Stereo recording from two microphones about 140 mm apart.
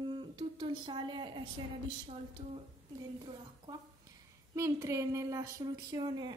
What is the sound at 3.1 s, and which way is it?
A woman's voice, 30° right (ahead or behind).